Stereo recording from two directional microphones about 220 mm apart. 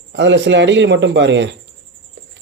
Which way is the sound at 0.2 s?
55° right (ahead or behind).